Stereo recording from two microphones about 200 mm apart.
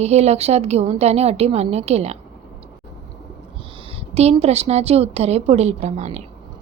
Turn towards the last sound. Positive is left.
turn(degrees=-35)  # may be behind; listen again after turning